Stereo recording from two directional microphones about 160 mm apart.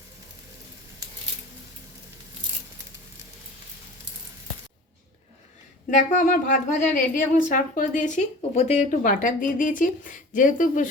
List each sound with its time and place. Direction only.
5.9 s a woman's voice: 50° left (ahead or behind)